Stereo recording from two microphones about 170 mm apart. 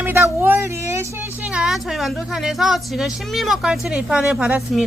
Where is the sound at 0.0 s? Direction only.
10° right (ahead or behind).